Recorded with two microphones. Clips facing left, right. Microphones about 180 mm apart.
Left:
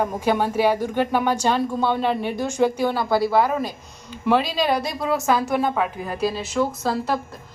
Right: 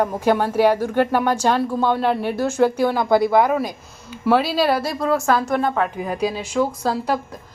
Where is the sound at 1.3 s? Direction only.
10° right (ahead or behind).